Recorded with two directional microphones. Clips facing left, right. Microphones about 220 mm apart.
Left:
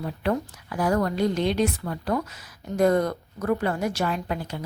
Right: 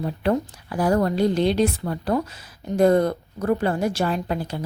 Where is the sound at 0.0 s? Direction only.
30° right (ahead or behind).